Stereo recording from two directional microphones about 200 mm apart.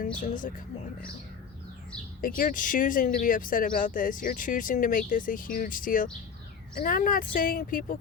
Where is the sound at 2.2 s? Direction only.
45° left (ahead or behind).